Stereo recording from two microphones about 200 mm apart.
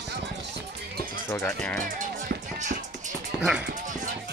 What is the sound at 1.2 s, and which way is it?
Speech, 15° left (ahead or behind).